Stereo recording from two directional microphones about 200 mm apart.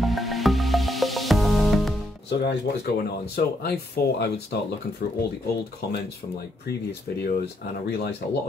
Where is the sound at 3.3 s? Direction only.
55° left (ahead or behind).